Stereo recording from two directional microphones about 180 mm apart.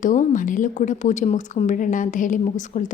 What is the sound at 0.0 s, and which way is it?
A woman's voice, 45° left (ahead or behind).